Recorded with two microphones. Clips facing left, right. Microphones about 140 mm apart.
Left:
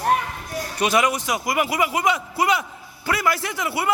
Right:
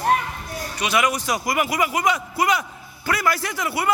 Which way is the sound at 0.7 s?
45° left (ahead or behind).